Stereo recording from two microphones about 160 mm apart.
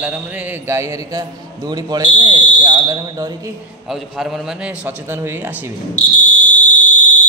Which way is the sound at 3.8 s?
Centre (ahead or behind).